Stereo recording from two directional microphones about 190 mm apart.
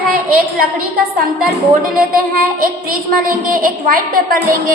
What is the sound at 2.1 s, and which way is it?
A woman's voice, 50° right (ahead or behind).